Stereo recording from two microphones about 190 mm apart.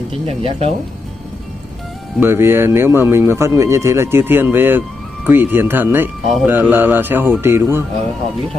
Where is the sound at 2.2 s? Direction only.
10° right (ahead or behind).